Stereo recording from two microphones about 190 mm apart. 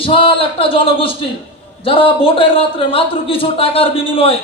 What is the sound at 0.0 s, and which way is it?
A man's voice, 30° left (ahead or behind).